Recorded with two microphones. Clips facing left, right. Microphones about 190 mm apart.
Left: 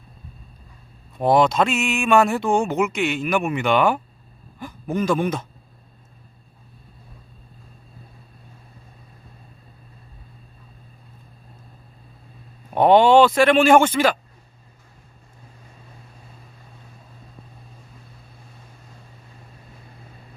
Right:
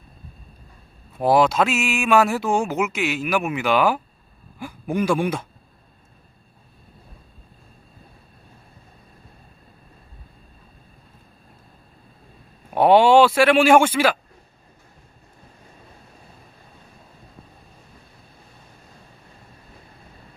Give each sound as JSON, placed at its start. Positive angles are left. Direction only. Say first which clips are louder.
{"t": 1.1, "sound": "speech", "louder": "even", "side_deg": -5}
{"t": 12.7, "sound": "speech", "louder": "even", "side_deg": -10}